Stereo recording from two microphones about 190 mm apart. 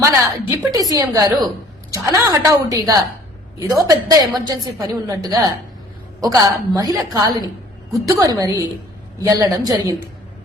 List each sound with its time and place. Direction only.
0.0 s a woman's voice: 15° right (ahead or behind)